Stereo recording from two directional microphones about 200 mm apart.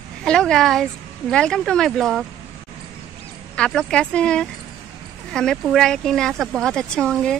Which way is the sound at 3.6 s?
5° left (ahead or behind).